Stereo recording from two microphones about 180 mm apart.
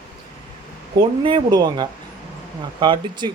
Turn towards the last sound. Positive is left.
turn(degrees=-25)  # may be behind; listen again after turning